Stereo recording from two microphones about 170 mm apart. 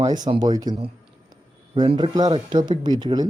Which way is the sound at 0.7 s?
35° right (ahead or behind).